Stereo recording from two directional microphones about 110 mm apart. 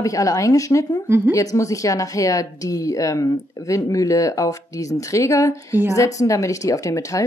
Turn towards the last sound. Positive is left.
turn(degrees=30)  # may be behind; listen again after turning